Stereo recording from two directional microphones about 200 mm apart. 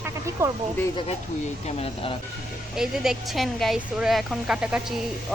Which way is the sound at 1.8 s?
25° left (ahead or behind).